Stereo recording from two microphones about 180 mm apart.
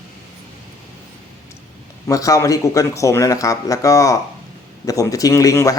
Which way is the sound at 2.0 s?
20° left (ahead or behind).